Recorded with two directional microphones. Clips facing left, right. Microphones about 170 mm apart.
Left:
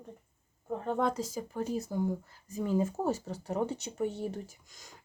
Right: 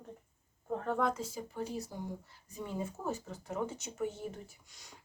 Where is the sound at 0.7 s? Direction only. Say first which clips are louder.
Left 2 dB; 20° left (ahead or behind).